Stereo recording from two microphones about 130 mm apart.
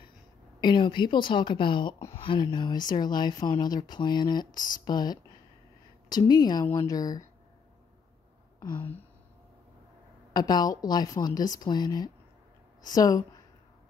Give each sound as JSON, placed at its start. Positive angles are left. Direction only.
{"t": 0.6, "sound": "a woman's voice", "side_deg": 35}
{"t": 8.5, "sound": "a sound", "side_deg": 15}
{"t": 10.3, "sound": "a woman's voice", "side_deg": 30}